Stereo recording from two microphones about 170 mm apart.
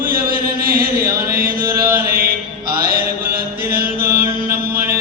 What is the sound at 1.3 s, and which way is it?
Mantra, 60° right (ahead or behind).